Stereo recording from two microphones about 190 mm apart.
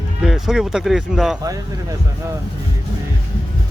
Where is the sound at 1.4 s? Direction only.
20° right (ahead or behind).